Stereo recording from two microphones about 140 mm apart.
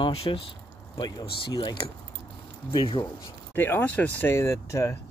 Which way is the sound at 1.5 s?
30° left (ahead or behind).